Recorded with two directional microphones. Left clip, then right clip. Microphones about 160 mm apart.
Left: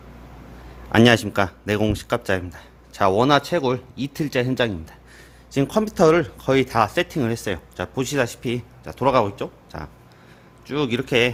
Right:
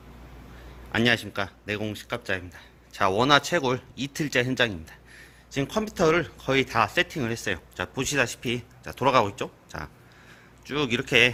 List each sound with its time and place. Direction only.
0.9 s speech: 30° left (ahead or behind); by 11.3 s 10° left (ahead or behind)